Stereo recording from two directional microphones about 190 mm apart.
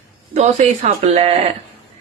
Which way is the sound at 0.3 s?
35° right (ahead or behind).